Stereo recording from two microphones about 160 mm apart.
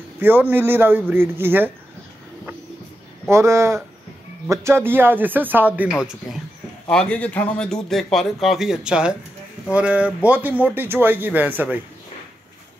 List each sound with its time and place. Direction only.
0.2 s speech: 10° right (ahead or behind)
3.3 s speech: 15° right (ahead or behind)